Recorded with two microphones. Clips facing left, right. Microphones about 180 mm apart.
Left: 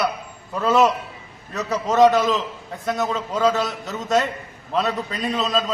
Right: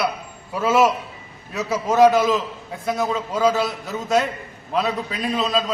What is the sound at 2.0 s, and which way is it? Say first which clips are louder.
A man's voice: right 1 dB; centre (ahead or behind).